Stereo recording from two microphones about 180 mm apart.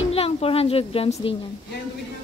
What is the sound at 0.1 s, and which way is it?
A woman's voice, 35° left (ahead or behind).